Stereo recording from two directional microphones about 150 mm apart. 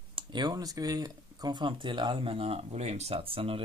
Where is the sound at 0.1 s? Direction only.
30° right (ahead or behind).